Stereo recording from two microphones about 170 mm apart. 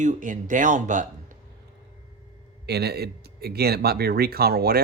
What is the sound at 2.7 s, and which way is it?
Speech, 75° right (ahead or behind).